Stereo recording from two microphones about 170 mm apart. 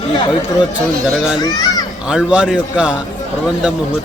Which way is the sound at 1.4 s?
20° left (ahead or behind).